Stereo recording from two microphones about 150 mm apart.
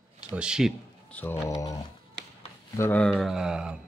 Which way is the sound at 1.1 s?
15° left (ahead or behind).